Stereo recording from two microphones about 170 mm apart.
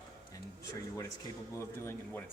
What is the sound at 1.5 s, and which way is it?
Speech, 15° left (ahead or behind).